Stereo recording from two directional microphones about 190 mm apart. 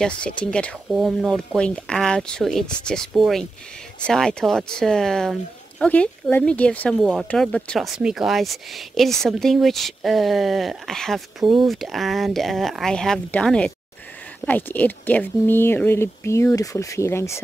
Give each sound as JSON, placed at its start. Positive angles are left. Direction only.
{"t": 0.5, "sound": "speech", "side_deg": 5}